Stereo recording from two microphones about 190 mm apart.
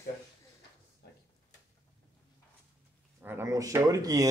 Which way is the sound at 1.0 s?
55° left (ahead or behind).